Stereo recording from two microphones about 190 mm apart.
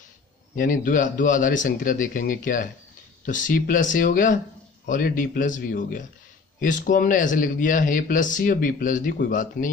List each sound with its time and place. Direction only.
0.6 s speech: 45° left (ahead or behind)